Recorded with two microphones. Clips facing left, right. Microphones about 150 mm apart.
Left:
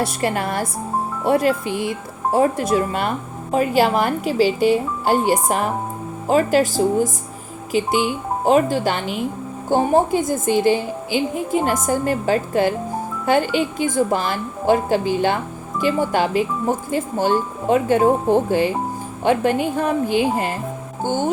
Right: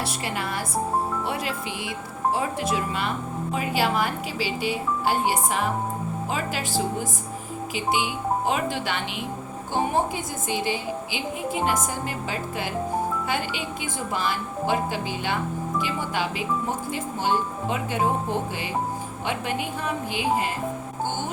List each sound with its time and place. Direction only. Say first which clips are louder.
0.0 s a woman's voice: left 8 dB; 50° left (ahead or behind)